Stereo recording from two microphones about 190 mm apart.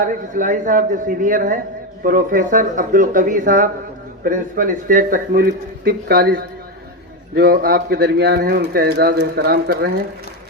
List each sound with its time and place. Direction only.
0.0 s a man's voice: 45° right (ahead or behind)